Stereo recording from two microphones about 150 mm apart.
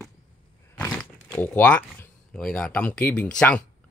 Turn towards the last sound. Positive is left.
turn(degrees=10)  # may be behind; listen again after turning